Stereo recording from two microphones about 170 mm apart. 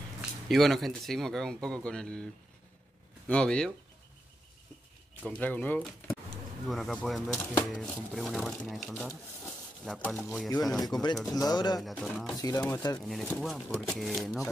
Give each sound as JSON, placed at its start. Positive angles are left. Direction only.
{"t": 0.2, "sound": "speech", "side_deg": 0}
{"t": 3.3, "sound": "speech", "side_deg": 5}
{"t": 5.2, "sound": "speech", "side_deg": 10}
{"t": 10.8, "sound": "speech", "side_deg": 25}
{"t": 11.8, "sound": "speech", "side_deg": 0}
{"t": 12.4, "sound": "speech", "side_deg": 20}
{"t": 13.0, "sound": "speech", "side_deg": 0}